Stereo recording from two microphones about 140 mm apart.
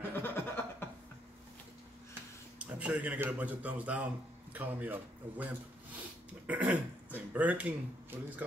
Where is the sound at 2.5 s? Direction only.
10° right (ahead or behind).